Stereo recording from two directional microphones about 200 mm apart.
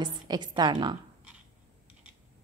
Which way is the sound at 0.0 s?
20° right (ahead or behind).